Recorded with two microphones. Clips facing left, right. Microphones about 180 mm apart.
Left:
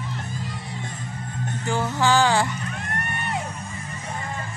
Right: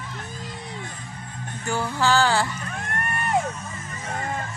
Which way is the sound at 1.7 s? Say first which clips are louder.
Left 1 dB; 20° left (ahead or behind).